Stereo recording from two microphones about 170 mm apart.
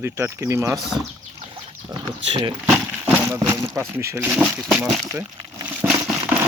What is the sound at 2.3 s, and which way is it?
Speech, 30° right (ahead or behind).